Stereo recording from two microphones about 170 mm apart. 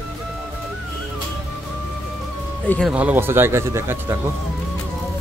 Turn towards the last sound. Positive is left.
turn(degrees=-15)  # may be behind; listen again after turning